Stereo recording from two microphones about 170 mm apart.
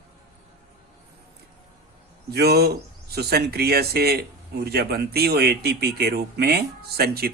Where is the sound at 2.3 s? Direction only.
70° right (ahead or behind).